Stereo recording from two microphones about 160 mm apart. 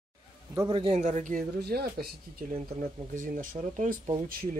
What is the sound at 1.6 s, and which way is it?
Speech, 80° right.